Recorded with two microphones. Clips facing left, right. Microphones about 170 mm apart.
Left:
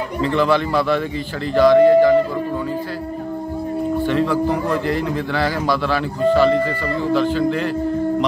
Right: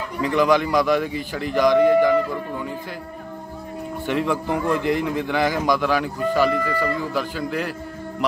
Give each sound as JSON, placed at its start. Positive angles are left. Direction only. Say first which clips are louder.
{"t": 0.2, "sound": "speech", "louder": "left 1 dB", "side_deg": -15}
{"t": 4.1, "sound": "speech", "louder": "left 1 dB", "side_deg": -15}